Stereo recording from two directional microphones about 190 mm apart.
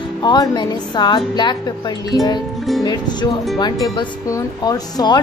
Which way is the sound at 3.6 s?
20° left (ahead or behind).